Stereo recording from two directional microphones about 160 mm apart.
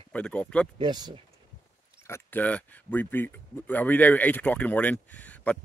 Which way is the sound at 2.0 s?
15° left (ahead or behind).